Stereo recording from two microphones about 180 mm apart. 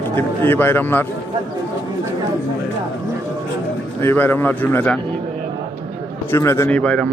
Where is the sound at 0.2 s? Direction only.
10° left (ahead or behind).